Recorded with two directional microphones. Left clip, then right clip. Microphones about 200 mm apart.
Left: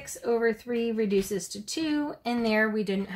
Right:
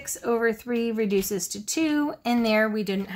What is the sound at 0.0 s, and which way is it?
Speech, 30° right (ahead or behind).